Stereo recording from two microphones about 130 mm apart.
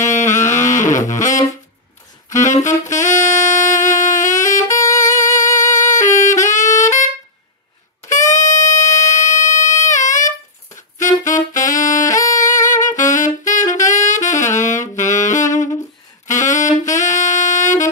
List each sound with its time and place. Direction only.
0.0 s a sound: 70° left (ahead or behind)
0.9 s saxophone: 75° left (ahead or behind)
4.8 s music: 25° left (ahead or behind)
5.8 s saxophone: 75° left (ahead or behind)
8.1 s music: 70° left (ahead or behind)
11.0 s saxophone: 75° left (ahead or behind)
12.1 s music: 25° left (ahead or behind)
12.4 s saxophone: 80° left